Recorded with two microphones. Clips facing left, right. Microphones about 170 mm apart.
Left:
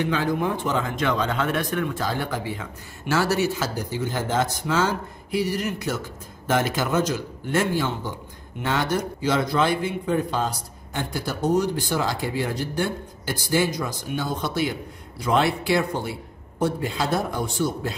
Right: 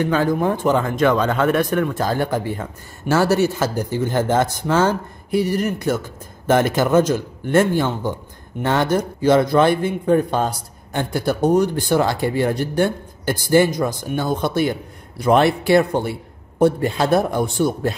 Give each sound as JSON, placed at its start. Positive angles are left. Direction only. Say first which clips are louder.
{"t": 0.0, "sound": "a man's voice", "louder": "right 5 dB", "side_deg": -45}